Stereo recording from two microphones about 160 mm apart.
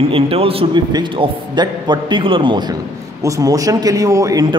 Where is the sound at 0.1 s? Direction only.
35° right (ahead or behind).